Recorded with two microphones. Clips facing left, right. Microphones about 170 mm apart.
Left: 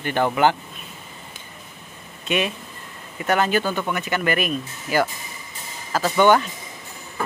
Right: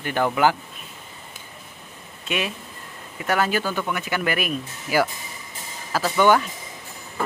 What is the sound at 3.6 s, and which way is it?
Speech, 20° left (ahead or behind).